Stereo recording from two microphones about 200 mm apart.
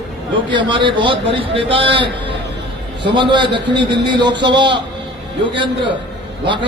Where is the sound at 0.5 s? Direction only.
25° right (ahead or behind).